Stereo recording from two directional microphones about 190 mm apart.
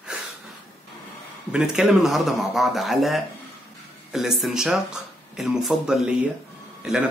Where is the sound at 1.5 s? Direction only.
5° right (ahead or behind).